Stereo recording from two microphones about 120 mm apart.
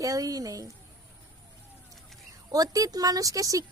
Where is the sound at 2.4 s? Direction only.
30° right (ahead or behind).